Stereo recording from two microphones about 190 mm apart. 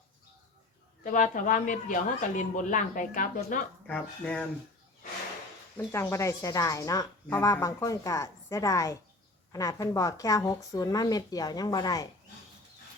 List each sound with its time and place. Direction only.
1.0 s speech: 45° left (ahead or behind)
3.8 s speech: 5° left (ahead or behind)
5.7 s a woman's voice: 15° left (ahead or behind)